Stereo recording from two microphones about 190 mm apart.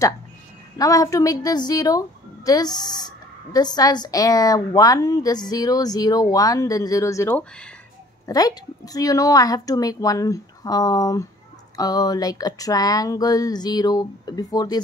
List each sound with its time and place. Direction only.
0.7 s a woman's voice: 20° left (ahead or behind)
8.3 s a woman's voice: 20° left (ahead or behind)